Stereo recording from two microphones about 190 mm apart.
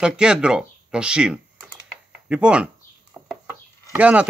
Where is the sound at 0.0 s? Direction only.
5° right (ahead or behind).